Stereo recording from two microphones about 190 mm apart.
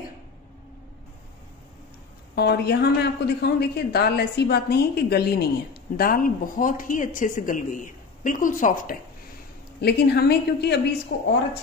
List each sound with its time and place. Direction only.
2.3 s speech: 60° left (ahead or behind); by 8.9 s 45° left (ahead or behind)
9.8 s a woman's voice: 60° left (ahead or behind)